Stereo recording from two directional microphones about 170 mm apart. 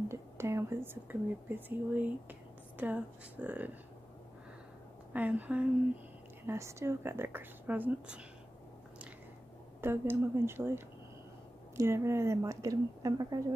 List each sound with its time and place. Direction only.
0.1 s speech: 15° right (ahead or behind)
5.1 s speech: 10° right (ahead or behind)
9.8 s speech: 15° right (ahead or behind)